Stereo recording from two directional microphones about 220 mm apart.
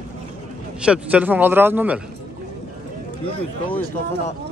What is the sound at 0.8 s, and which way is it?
A man's voice, 5° right (ahead or behind).